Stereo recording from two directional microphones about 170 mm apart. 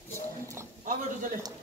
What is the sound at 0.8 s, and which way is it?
Speech, 50° right (ahead or behind).